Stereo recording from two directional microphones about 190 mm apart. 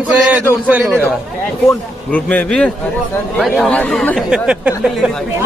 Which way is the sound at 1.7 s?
5° left (ahead or behind).